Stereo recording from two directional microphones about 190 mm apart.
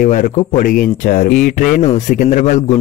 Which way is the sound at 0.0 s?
40° left (ahead or behind).